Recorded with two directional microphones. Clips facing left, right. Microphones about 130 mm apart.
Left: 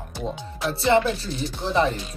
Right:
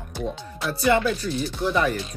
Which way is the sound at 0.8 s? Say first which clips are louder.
Left 1 dB; 25° left (ahead or behind).